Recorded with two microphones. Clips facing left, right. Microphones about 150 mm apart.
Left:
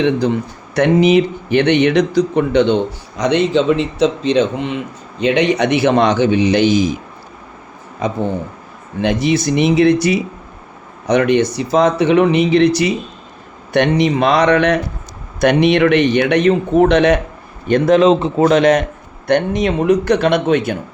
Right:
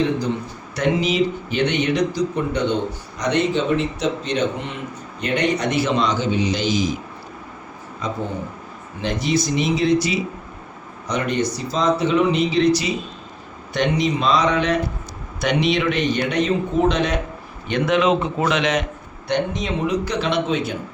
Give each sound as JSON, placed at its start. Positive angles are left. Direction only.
{"t": 0.8, "sound": "a man's voice", "side_deg": 60}
{"t": 9.0, "sound": "a man's voice", "side_deg": 65}
{"t": 11.0, "sound": "speech", "side_deg": 70}
{"t": 17.7, "sound": "a man's voice", "side_deg": 40}
{"t": 19.3, "sound": "a man's voice", "side_deg": 65}